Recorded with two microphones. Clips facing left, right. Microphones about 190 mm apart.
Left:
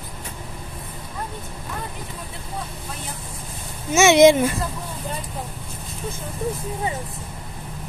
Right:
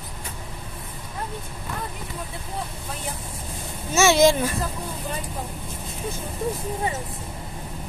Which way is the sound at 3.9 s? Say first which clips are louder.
Left 4 dB; 20° left (ahead or behind).